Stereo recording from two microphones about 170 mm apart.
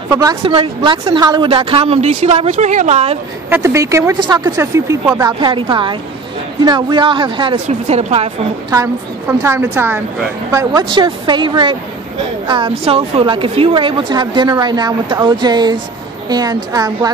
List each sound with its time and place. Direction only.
0.4 s a woman's voice: 35° right (ahead or behind)
3.4 s a woman's voice: 15° right (ahead or behind); by 8.3 s 40° right (ahead or behind)
8.6 s a woman's voice: 20° right (ahead or behind)